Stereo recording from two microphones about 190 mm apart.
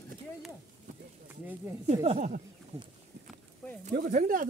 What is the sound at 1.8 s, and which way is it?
Speech, 35° right (ahead or behind).